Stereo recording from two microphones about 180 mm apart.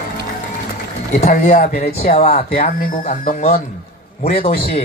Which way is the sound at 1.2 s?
40° left (ahead or behind).